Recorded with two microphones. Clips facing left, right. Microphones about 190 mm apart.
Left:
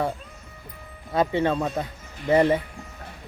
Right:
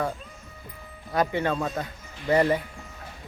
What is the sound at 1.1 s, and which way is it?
Speech, 25° left (ahead or behind).